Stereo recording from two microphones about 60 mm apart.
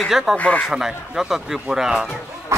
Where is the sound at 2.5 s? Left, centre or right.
Right.